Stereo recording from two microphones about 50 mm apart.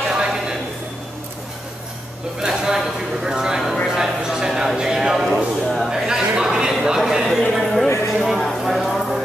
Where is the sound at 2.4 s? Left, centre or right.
Centre.